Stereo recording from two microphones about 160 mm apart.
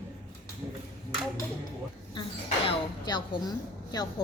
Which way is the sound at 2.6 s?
25° left (ahead or behind).